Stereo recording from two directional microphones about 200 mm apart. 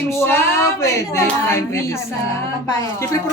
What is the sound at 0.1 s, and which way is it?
A woman's voice, 10° left (ahead or behind).